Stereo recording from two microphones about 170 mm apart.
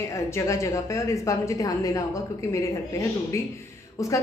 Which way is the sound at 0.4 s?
15° left (ahead or behind).